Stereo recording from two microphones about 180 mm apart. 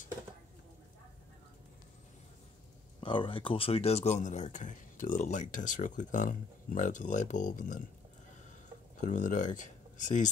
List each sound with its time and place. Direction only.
3.0 s speech: 30° left (ahead or behind); by 7.8 s 45° left (ahead or behind)
9.0 s speech: 45° left (ahead or behind)